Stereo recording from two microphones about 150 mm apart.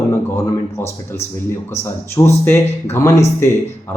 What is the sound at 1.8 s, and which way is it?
Speech, 15° left (ahead or behind).